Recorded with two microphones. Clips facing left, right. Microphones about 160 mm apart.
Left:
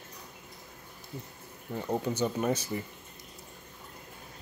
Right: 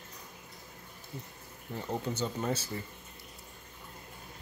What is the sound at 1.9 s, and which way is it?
Speech, 15° left (ahead or behind).